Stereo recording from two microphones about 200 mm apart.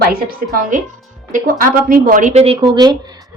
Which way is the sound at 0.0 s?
45° right (ahead or behind).